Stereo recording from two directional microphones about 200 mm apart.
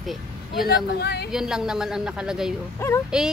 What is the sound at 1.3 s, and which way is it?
Speech, centre (ahead or behind).